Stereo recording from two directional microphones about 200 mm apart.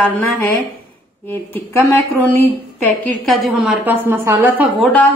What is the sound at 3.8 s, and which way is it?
Speech, 10° right (ahead or behind).